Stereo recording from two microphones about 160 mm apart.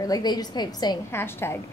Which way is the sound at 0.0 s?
25° left (ahead or behind).